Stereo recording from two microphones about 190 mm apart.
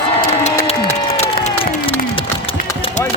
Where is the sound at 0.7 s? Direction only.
35° left (ahead or behind).